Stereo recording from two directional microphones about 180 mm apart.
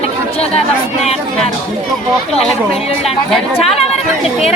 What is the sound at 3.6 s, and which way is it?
Speech, 35° left (ahead or behind).